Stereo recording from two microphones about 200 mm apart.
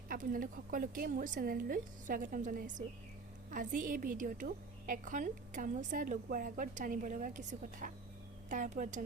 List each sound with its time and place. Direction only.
0.1 s a woman's voice: 45° right (ahead or behind)